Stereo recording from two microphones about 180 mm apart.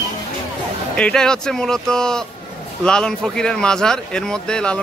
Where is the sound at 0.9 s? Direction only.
5° left (ahead or behind).